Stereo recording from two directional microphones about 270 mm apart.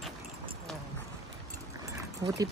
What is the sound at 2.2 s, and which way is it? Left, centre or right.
Speech, centre.